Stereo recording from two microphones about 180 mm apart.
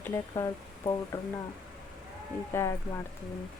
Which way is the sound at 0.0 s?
15° left (ahead or behind).